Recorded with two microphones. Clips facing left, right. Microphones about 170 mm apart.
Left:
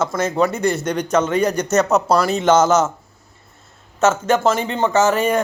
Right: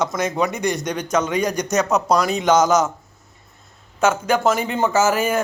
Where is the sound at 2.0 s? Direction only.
5° left (ahead or behind).